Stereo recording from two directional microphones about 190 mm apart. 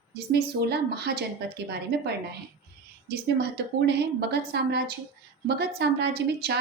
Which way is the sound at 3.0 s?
60° right (ahead or behind).